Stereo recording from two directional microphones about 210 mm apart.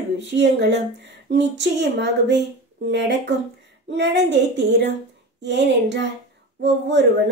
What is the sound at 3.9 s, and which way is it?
Speech, 55° right (ahead or behind).